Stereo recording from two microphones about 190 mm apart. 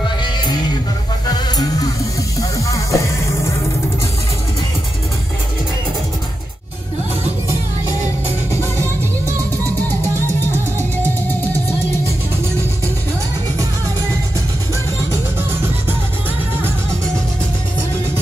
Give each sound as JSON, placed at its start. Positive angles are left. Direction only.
{"t": 0.2, "sound": "music", "side_deg": 20}
{"t": 8.7, "sound": "music", "side_deg": -15}